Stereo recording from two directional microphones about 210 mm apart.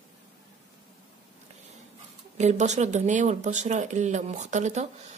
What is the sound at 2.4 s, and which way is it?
Speech, 35° right (ahead or behind).